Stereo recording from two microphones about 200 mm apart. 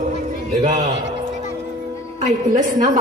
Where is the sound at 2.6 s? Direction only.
40° right (ahead or behind).